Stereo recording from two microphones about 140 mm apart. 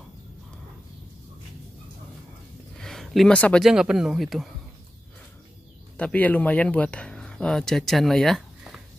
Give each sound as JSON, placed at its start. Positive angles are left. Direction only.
{"t": 2.8, "sound": "a sound", "side_deg": 0}
{"t": 3.6, "sound": "a man's voice", "side_deg": -5}
{"t": 5.9, "sound": "speech", "side_deg": 10}